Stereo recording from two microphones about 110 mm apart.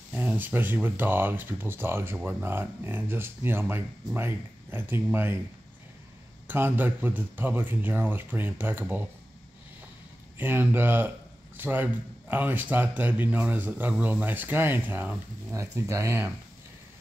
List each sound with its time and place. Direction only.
0.1 s speech: 15° right (ahead or behind)
6.4 s speech: 20° right (ahead or behind)
10.3 s speech: 20° right (ahead or behind)
15.5 s speech: 25° right (ahead or behind)